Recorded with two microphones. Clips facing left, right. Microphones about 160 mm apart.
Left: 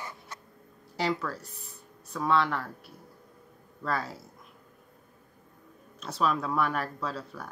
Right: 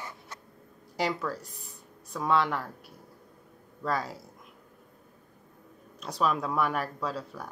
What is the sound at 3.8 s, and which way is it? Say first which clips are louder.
Speech: right 1 dB; 15° right (ahead or behind).